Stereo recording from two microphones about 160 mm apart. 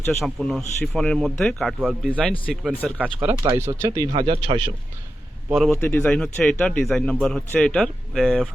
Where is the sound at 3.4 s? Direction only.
20° right (ahead or behind).